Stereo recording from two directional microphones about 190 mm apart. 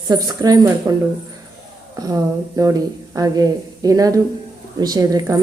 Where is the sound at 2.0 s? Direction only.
20° right (ahead or behind).